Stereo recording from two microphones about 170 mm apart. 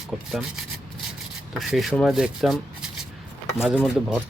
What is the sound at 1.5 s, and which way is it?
Speech, centre (ahead or behind).